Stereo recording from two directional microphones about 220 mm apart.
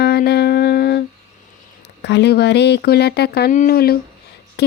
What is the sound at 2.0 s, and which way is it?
Speech, 50° left (ahead or behind).